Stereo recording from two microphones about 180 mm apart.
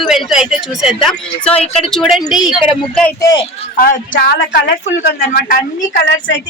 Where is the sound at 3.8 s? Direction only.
55° left (ahead or behind).